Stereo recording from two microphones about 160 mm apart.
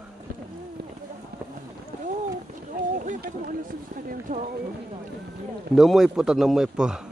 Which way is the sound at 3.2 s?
60° right (ahead or behind).